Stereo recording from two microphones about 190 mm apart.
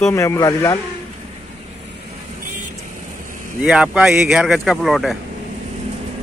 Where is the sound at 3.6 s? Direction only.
5° right (ahead or behind).